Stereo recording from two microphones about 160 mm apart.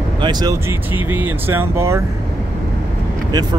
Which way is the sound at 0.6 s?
10° right (ahead or behind).